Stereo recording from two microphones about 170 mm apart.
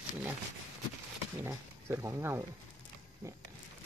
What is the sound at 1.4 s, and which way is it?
Speech, 15° right (ahead or behind).